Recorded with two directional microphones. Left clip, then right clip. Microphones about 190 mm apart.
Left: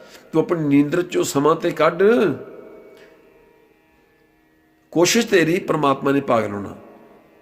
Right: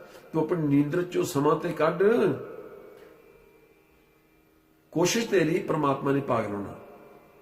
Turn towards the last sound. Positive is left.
turn(degrees=55)  # may be behind; listen again after turning